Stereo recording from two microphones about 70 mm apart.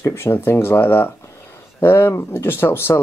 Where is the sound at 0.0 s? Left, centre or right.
Left.